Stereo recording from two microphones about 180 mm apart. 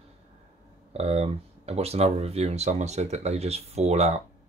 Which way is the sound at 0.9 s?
35° right (ahead or behind).